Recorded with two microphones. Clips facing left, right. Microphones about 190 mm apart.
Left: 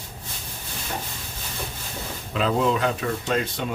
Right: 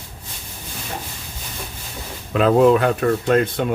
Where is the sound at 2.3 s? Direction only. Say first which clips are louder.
Right 9 dB; 55° right (ahead or behind).